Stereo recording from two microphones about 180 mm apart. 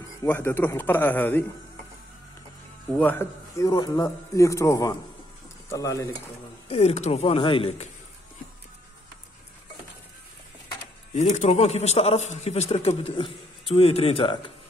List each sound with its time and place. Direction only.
0.2 s speech: 10° left (ahead or behind)
3.0 s speech: 10° left (ahead or behind)
6.7 s speech: 35° left (ahead or behind)
11.1 s speech: 40° left (ahead or behind)